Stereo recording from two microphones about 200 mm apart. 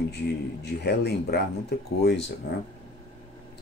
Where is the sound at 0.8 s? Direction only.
55° left (ahead or behind).